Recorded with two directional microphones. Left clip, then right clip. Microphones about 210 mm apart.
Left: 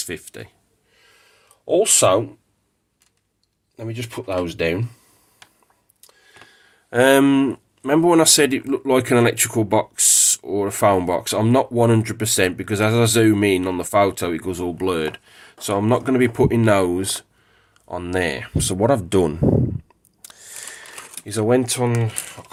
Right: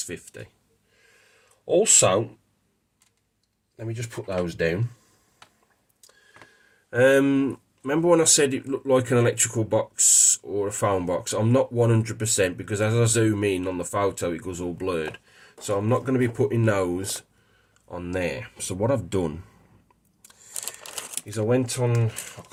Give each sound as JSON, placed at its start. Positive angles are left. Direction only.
{"t": 0.0, "sound": "speech", "side_deg": 40}
{"t": 1.6, "sound": "speech", "side_deg": 50}
{"t": 3.8, "sound": "speech", "side_deg": 50}
{"t": 6.9, "sound": "speech", "side_deg": 50}
{"t": 21.2, "sound": "speech", "side_deg": 40}